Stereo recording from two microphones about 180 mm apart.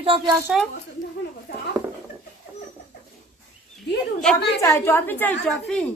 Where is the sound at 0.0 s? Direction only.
30° right (ahead or behind).